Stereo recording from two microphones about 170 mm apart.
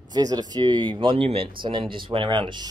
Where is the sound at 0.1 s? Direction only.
25° right (ahead or behind).